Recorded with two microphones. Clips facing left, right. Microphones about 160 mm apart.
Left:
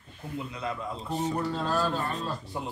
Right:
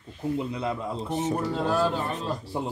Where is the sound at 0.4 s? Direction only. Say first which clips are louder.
Right 5 dB; 30° right (ahead or behind).